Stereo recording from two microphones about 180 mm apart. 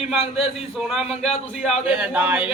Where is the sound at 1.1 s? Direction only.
35° left (ahead or behind).